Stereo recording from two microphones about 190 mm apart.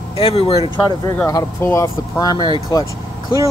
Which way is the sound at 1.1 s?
15° left (ahead or behind).